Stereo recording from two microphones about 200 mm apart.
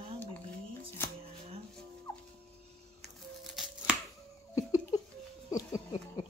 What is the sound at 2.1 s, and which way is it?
Turkey, 10° left (ahead or behind).